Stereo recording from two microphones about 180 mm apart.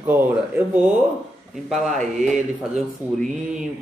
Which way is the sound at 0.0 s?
10° right (ahead or behind).